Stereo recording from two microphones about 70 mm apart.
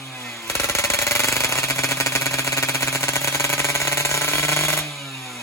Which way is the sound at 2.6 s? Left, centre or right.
Left.